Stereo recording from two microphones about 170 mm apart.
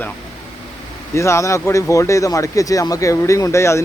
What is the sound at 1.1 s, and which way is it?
Speech, 15° left (ahead or behind).